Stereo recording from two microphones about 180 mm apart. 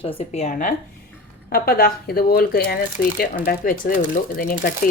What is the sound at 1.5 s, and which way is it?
Speech, 55° left (ahead or behind).